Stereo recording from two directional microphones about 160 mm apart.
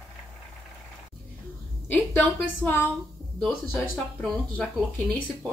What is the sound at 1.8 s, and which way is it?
Speech, 10° left (ahead or behind).